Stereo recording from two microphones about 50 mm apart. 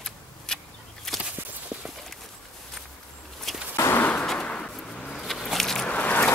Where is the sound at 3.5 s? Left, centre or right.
Centre.